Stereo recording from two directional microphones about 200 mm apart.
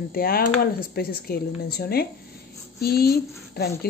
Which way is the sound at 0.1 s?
45° left (ahead or behind).